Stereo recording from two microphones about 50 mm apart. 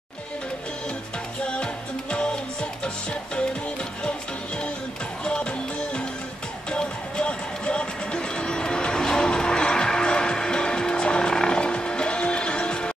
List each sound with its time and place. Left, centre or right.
1.4 s music: centre
5.2 s music: centre